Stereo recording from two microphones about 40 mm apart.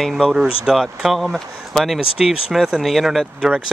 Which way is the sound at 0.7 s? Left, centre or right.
Centre.